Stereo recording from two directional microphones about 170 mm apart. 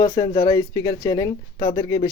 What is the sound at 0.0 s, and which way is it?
Speech, 20° left (ahead or behind).